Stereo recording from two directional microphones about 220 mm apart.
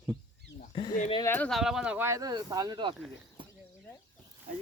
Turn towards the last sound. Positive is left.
turn(degrees=-20)  # may be behind; listen again after turning